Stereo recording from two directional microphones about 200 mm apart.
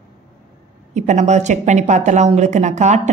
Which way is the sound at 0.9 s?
35° right (ahead or behind).